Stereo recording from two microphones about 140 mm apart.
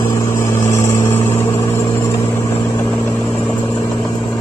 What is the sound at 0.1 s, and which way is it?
Vehicle, 20° left (ahead or behind).